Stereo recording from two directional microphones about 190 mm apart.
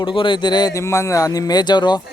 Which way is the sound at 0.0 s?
25° left (ahead or behind).